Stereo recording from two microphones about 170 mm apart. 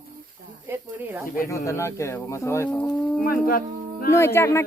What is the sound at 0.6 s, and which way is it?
Speech, 10° right (ahead or behind).